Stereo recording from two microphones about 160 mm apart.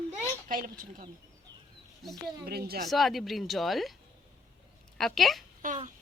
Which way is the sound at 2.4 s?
75° right (ahead or behind).